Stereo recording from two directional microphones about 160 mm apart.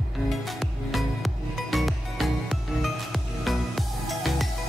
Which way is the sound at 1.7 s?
Centre (ahead or behind).